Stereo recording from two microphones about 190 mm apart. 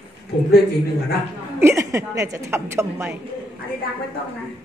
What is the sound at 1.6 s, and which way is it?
Speech, 15° right (ahead or behind).